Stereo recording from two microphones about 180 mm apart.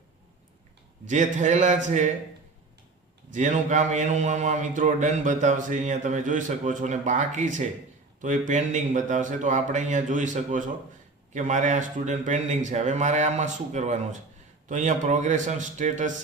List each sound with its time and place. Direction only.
1.0 s mantra: 45° right (ahead or behind)
3.3 s mantra: 45° right (ahead or behind)